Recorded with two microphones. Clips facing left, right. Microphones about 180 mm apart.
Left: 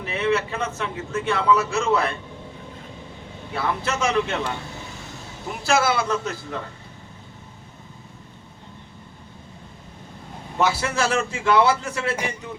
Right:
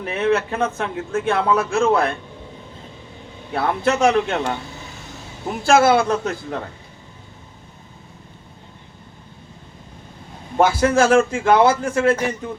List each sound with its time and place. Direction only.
0.0 s a man's voice: 50° right (ahead or behind)
3.5 s a man's voice: 50° right (ahead or behind)
10.6 s a man's voice: 45° right (ahead or behind)